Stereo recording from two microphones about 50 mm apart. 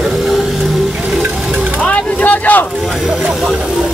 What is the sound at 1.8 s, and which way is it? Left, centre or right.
Vehicle, left.